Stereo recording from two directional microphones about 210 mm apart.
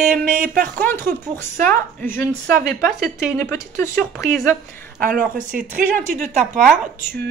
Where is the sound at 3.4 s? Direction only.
15° left (ahead or behind).